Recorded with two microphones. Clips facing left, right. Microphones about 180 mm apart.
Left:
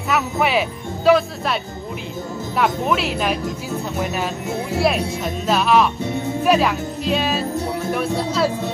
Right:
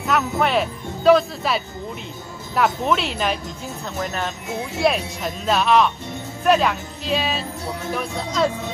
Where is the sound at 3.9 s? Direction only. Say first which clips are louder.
Left 1 dB; 10° left (ahead or behind).